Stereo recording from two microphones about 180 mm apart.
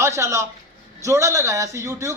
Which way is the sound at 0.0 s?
15° right (ahead or behind).